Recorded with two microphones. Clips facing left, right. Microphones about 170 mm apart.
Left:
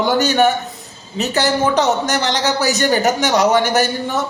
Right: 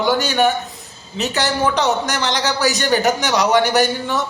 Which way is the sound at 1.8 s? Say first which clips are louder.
Left 2 dB; 45° left (ahead or behind).